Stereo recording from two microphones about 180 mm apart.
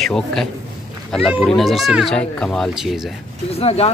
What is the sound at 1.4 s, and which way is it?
A man's voice, centre (ahead or behind).